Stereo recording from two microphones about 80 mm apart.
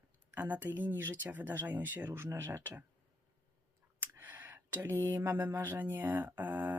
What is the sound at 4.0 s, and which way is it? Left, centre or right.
Speech, right.